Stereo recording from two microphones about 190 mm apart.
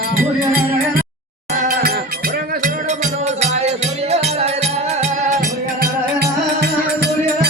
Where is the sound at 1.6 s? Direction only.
45° right (ahead or behind).